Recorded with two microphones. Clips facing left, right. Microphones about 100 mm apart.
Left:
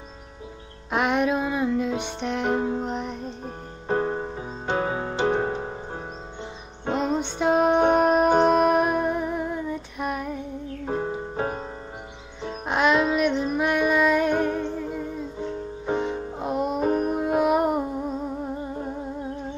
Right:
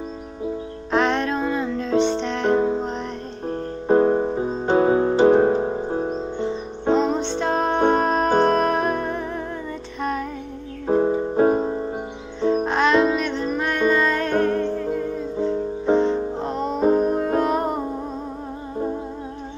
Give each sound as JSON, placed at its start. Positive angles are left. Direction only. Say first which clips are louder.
{"t": 0.9, "sound": "music", "louder": "right 2 dB", "side_deg": 10}
{"t": 3.8, "sound": "music", "louder": "right 8 dB", "side_deg": -30}
{"t": 7.0, "sound": "music", "louder": "right 3 dB", "side_deg": 10}
{"t": 10.9, "sound": "music", "louder": "right 10 dB", "side_deg": -30}
{"t": 12.6, "sound": "music", "louder": "even", "side_deg": 10}
{"t": 16.8, "sound": "music", "louder": "right 8 dB", "side_deg": -25}
{"t": 17.1, "sound": "music", "louder": "right 1 dB", "side_deg": 10}